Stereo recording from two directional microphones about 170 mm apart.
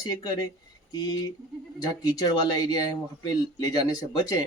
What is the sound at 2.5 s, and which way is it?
Speech, 25° left (ahead or behind).